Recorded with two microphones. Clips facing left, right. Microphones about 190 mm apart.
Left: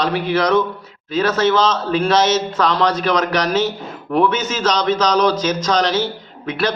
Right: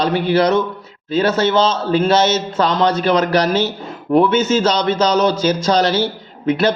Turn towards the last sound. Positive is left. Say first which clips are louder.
# right 5 dB
turn(degrees=-30)  # may be behind; listen again after turning